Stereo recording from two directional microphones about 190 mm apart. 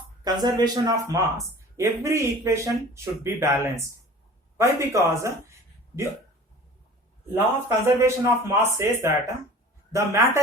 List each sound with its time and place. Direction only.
0.4 s a man's voice: 20° right (ahead or behind)
7.3 s speech: 15° right (ahead or behind)